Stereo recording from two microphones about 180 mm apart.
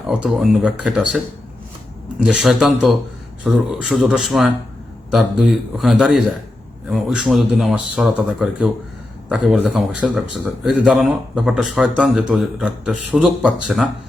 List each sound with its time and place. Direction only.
0.2 s speech: 5° right (ahead or behind)
2.2 s speech: centre (ahead or behind)